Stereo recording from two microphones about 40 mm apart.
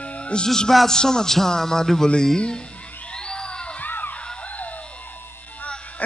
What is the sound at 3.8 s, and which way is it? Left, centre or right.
Music, left.